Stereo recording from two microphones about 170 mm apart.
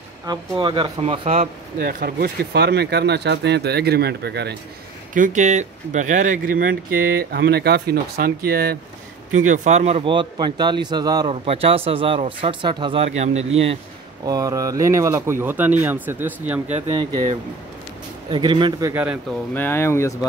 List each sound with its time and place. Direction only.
0.3 s a man's voice: 30° right (ahead or behind)
1.8 s speech: 60° right (ahead or behind); by 4.6 s 75° right (ahead or behind)
5.1 s speech: 50° right (ahead or behind)
9.5 s a man's voice: 40° right (ahead or behind); by 11.2 s 25° right (ahead or behind)
11.2 s speech: 35° right (ahead or behind)
14.2 s speech: 20° right (ahead or behind)
16.6 s speech: 40° right (ahead or behind)
18.3 s a man's voice: 30° right (ahead or behind)
18.9 s speech: 10° right (ahead or behind)
19.5 s speech: 15° left (ahead or behind)